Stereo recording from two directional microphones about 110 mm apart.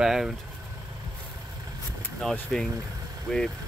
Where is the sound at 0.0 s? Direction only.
5° right (ahead or behind).